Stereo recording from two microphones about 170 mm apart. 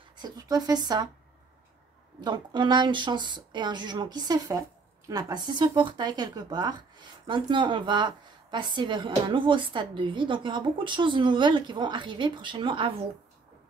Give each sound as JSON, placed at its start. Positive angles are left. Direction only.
{"t": 0.2, "sound": "speech", "side_deg": -20}
{"t": 2.2, "sound": "speech", "side_deg": -25}